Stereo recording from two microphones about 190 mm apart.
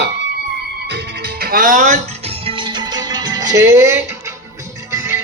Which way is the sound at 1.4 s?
50° right (ahead or behind).